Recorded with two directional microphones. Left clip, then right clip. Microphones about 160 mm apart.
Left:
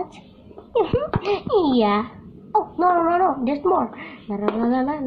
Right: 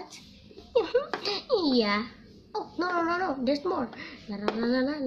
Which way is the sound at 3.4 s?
35° left (ahead or behind).